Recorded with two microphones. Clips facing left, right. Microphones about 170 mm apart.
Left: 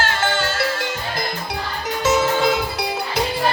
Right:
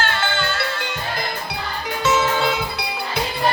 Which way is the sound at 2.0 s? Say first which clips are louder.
Left 2 dB; 40° left (ahead or behind).